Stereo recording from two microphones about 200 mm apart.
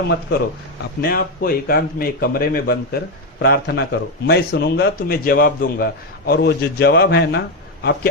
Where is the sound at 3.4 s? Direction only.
60° left (ahead or behind).